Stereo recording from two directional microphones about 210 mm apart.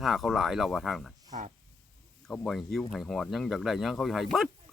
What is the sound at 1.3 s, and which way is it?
Speech, 35° right (ahead or behind).